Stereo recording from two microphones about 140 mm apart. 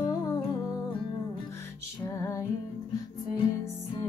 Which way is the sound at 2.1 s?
20° left (ahead or behind).